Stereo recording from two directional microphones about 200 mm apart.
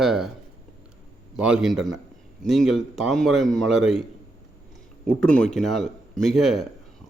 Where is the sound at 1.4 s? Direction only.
5° right (ahead or behind).